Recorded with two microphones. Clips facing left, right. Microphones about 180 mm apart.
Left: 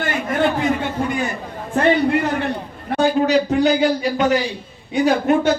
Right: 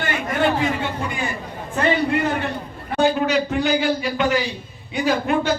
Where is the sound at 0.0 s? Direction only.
45° left (ahead or behind).